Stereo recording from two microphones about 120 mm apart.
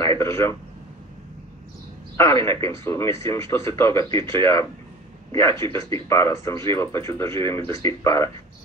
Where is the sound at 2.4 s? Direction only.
25° left (ahead or behind).